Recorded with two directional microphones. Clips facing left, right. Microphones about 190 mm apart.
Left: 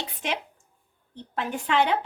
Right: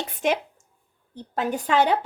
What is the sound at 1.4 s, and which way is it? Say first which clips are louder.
Speech: right 3 dB; 40° right (ahead or behind).